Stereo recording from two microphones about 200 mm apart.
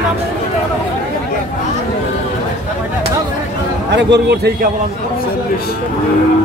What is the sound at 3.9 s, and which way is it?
Speech, 60° right (ahead or behind).